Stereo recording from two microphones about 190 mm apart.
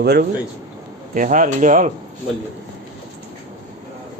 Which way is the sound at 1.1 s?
45° right (ahead or behind).